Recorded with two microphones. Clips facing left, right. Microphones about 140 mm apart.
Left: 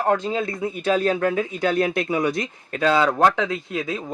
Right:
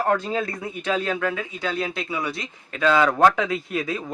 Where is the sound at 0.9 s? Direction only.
35° left (ahead or behind).